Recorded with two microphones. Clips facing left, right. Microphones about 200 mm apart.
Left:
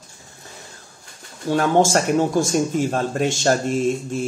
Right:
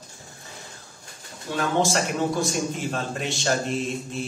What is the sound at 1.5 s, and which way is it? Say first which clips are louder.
Speech: left 7 dB; 50° left (ahead or behind).